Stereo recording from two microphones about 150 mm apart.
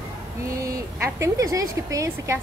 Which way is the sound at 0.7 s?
20° right (ahead or behind).